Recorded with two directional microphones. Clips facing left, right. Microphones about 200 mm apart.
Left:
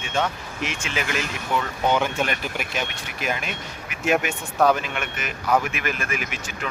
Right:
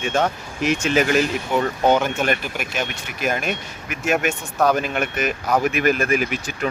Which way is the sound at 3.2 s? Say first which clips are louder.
Right 5 dB; 50° right (ahead or behind).